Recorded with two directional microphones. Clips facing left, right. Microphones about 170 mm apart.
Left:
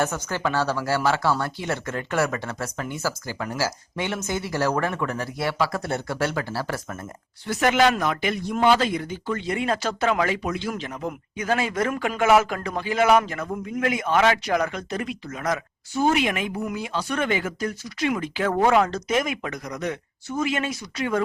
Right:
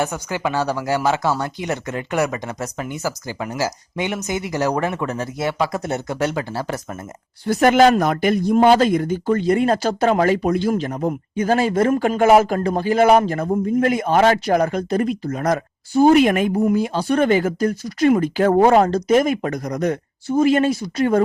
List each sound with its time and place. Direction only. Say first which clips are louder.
0.0 s speech: right 2 dB; 15° right (ahead or behind)
7.4 s speech: right 6 dB; 45° right (ahead or behind)